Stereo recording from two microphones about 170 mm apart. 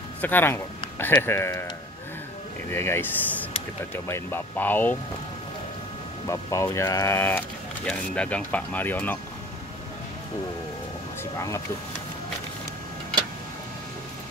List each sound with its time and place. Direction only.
0.2 s speech: 10° left (ahead or behind)
2.7 s speech: 15° left (ahead or behind)
6.2 s speech: 20° left (ahead or behind)
11.3 s speech: 15° left (ahead or behind)